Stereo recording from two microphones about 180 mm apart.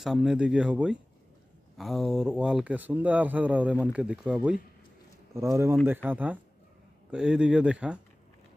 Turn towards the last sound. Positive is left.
turn(degrees=-5)  # may be behind; listen again after turning